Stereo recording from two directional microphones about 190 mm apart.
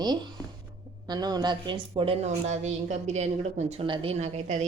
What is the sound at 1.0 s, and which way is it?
A woman's voice, 20° right (ahead or behind).